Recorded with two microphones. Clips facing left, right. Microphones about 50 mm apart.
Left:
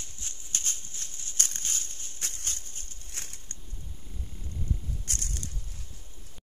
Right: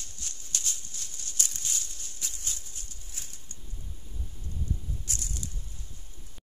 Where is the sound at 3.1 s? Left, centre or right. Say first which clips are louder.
Left 4 dB; left.